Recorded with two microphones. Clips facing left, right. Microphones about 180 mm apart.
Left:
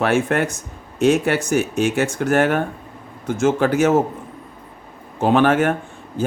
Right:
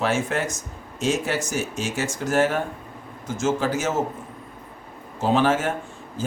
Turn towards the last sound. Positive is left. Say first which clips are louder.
# left 6 dB
turn(degrees=60)  # may be behind; listen again after turning